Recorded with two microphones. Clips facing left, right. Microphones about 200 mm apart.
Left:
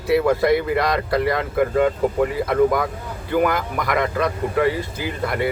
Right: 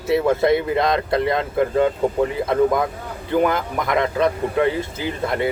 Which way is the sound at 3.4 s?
25° right (ahead or behind).